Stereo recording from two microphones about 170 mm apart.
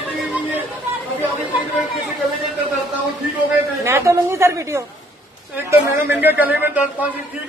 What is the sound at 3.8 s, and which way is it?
A woman's voice, 15° right (ahead or behind).